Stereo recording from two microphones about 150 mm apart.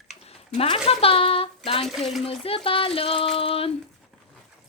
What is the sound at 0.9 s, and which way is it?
Speech, 40° left (ahead or behind).